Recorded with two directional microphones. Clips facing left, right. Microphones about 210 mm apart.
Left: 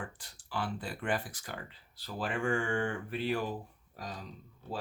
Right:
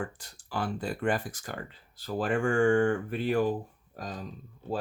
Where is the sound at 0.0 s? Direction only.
45° right (ahead or behind).